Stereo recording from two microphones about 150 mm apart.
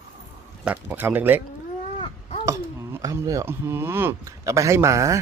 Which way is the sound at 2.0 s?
35° left (ahead or behind).